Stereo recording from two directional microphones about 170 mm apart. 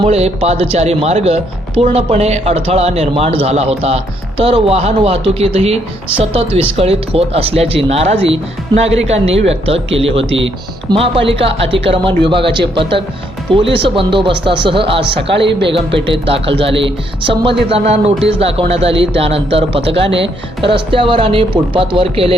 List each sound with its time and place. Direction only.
0.0 s speech: 35° right (ahead or behind)
10.1 s speech: 90° right
10.8 s speech: 35° right (ahead or behind)
15.3 s speech: 90° right
16.1 s speech: 35° right (ahead or behind)
19.9 s speech: 90° right
20.6 s speech: 30° right (ahead or behind)